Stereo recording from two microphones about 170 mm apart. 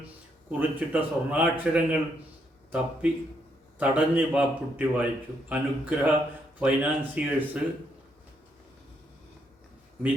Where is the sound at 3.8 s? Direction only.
10° right (ahead or behind).